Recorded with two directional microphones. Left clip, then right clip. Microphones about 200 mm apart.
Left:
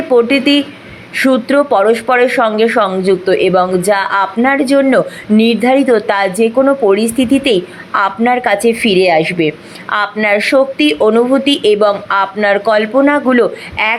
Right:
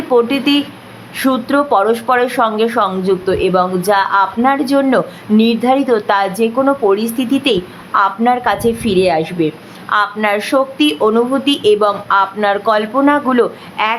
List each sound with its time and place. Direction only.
0.1 s speech: 5° left (ahead or behind)
8.7 s a woman's voice: 30° right (ahead or behind)
9.0 s speech: 15° left (ahead or behind)